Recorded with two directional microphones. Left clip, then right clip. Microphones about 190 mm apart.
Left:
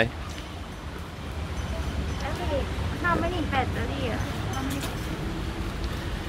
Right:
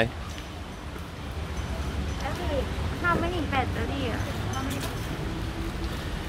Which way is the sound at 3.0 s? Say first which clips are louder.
Even; 40° right (ahead or behind).